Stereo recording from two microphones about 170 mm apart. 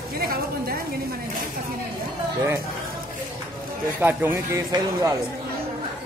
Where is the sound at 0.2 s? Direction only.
65° right (ahead or behind).